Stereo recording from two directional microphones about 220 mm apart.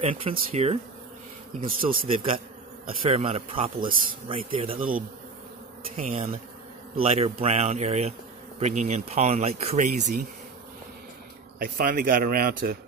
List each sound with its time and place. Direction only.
0.0 s speech: 25° right (ahead or behind)
1.9 s speech: 40° right (ahead or behind)
2.9 s speech: 25° right (ahead or behind)
4.7 s speech: 40° right (ahead or behind)
5.9 s speech: 25° right (ahead or behind)
11.6 s speech: 40° right (ahead or behind)